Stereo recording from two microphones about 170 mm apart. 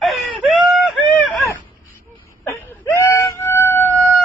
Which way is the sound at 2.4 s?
15° left (ahead or behind).